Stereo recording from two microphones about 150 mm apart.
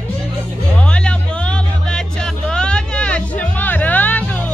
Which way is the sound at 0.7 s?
5° left (ahead or behind).